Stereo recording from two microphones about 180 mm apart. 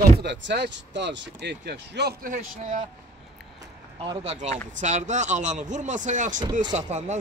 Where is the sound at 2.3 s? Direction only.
45° right (ahead or behind).